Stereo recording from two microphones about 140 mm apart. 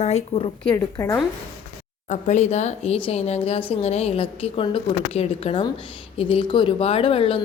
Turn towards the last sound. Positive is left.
turn(degrees=40)  # may be behind; listen again after turning